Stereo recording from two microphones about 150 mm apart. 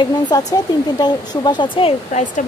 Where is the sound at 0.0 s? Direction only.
25° left (ahead or behind).